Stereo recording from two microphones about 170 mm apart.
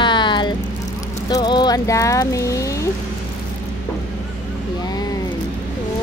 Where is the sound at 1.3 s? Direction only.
25° left (ahead or behind).